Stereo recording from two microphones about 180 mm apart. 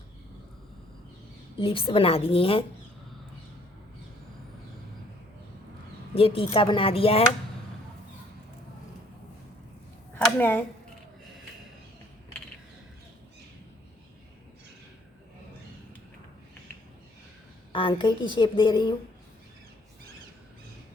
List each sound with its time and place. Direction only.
1.5 s a woman's voice: 30° left (ahead or behind)
6.1 s a woman's voice: 30° left (ahead or behind)
10.2 s a sound: 10° left (ahead or behind)
17.7 s a woman's voice: 30° left (ahead or behind)